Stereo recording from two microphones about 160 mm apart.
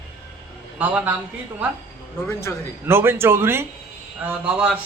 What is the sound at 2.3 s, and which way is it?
Speech, 15° left (ahead or behind).